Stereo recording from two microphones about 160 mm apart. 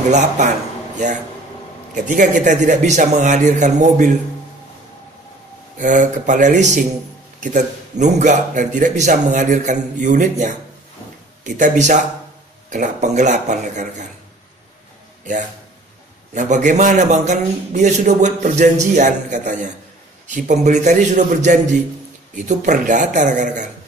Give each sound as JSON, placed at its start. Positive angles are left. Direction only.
{"t": 2.0, "sound": "a man's voice", "side_deg": -55}
{"t": 5.8, "sound": "a man's voice", "side_deg": -50}
{"t": 16.3, "sound": "a man's voice", "side_deg": -50}